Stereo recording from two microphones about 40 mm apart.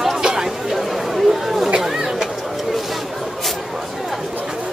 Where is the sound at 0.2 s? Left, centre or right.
Centre.